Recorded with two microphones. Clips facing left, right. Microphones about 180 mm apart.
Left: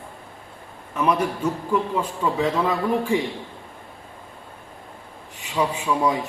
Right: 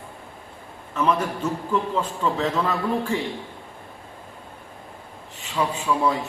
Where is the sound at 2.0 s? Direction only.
10° left (ahead or behind).